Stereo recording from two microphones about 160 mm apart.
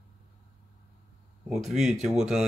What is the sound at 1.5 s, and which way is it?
Speech, centre (ahead or behind).